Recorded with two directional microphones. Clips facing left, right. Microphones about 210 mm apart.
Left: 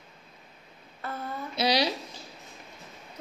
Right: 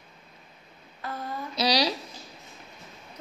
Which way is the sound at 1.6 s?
25° left (ahead or behind).